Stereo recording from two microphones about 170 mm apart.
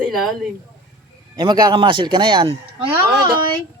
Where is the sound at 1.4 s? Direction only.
25° right (ahead or behind).